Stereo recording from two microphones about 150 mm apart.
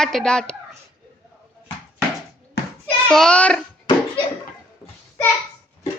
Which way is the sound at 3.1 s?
5° left (ahead or behind).